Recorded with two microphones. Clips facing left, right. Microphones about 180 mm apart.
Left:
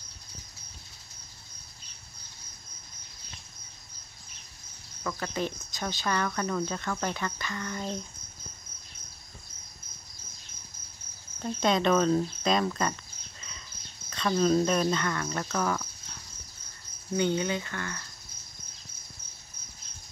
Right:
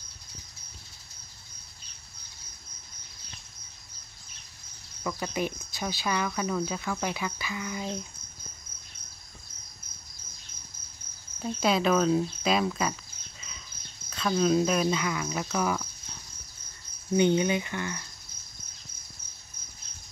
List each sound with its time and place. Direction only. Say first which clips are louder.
5.0 s speech: right 1 dB; 10° right (ahead or behind)
11.4 s speech: even; 5° right (ahead or behind)
14.1 s speech: even; 5° right (ahead or behind)
17.1 s speech: right 4 dB; 20° right (ahead or behind)